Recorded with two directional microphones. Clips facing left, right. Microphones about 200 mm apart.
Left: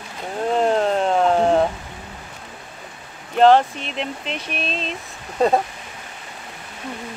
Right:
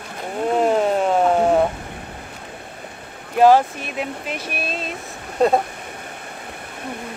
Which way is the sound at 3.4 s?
5° right (ahead or behind).